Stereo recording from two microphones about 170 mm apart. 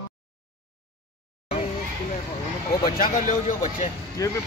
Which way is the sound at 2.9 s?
55° left (ahead or behind).